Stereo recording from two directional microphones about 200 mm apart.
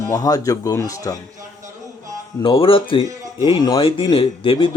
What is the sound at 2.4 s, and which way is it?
A man's voice, 25° left (ahead or behind).